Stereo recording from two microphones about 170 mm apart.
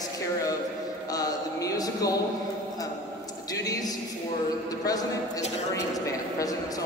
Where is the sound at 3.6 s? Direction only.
20° left (ahead or behind).